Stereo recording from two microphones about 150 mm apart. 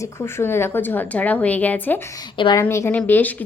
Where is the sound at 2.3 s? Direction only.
35° left (ahead or behind).